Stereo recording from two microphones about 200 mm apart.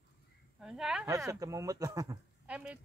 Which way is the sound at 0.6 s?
5° right (ahead or behind).